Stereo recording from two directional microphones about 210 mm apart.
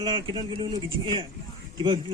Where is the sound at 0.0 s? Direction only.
20° right (ahead or behind).